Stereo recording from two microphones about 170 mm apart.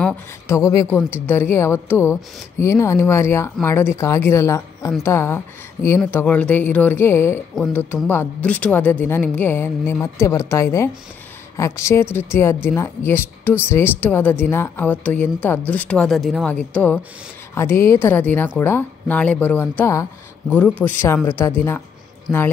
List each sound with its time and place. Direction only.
0.0 s a woman's voice: 15° left (ahead or behind)
22.3 s a woman's voice: centre (ahead or behind)